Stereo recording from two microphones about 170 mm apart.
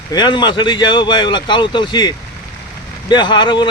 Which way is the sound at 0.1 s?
25° left (ahead or behind).